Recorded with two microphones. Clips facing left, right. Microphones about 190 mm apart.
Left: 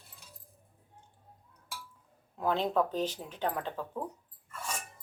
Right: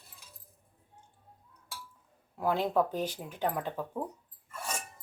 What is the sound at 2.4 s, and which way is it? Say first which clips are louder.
Speech: right 1 dB; 10° right (ahead or behind).